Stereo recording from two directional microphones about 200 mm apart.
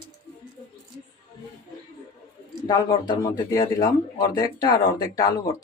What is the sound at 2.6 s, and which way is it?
Speech, 20° left (ahead or behind).